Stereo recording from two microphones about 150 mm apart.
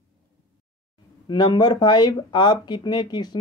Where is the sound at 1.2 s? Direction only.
30° left (ahead or behind).